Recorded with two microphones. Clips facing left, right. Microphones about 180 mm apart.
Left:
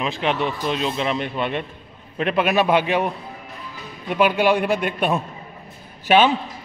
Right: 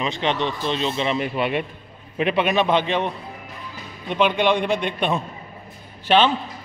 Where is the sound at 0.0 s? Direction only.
5° left (ahead or behind).